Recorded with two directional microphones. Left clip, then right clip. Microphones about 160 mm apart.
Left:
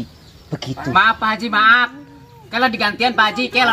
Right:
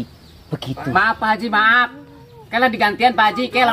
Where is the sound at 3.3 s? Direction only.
30° right (ahead or behind).